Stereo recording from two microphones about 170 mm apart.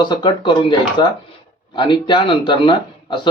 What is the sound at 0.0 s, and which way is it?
Speech, 25° left (ahead or behind).